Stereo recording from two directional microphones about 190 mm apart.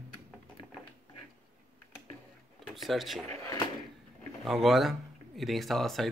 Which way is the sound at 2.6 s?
Centre (ahead or behind).